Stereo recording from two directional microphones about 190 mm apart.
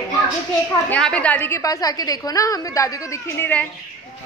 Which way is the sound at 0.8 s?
5° left (ahead or behind).